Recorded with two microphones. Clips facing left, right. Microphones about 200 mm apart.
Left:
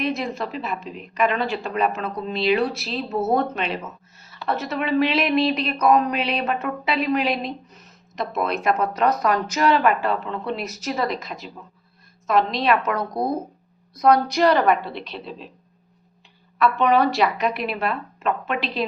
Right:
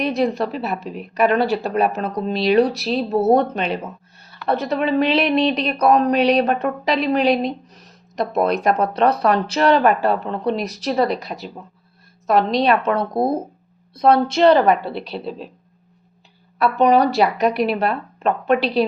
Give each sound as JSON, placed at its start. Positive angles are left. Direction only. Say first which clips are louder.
{"t": 0.0, "sound": "speech", "louder": "right 6 dB", "side_deg": -35}
{"t": 12.6, "sound": "a woman's voice", "louder": "right 3 dB", "side_deg": -30}
{"t": 16.6, "sound": "speech", "louder": "right 3 dB", "side_deg": -40}